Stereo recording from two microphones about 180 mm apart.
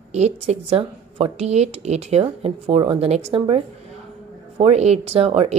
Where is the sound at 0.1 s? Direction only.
40° right (ahead or behind).